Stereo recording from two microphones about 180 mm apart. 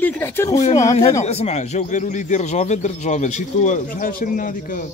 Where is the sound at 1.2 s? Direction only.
35° left (ahead or behind).